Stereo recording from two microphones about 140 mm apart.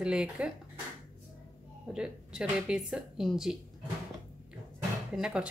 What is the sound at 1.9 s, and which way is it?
Speech, 5° right (ahead or behind).